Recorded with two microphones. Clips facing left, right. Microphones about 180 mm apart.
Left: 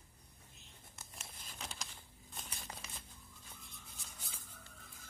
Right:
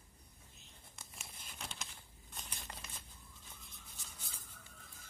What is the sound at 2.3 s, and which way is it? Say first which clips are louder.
Crumpling: left 1 dB; centre (ahead or behind).